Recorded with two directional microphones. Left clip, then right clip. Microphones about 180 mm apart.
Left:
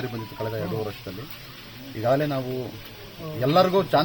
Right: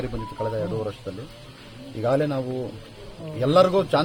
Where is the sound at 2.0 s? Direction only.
25° right (ahead or behind).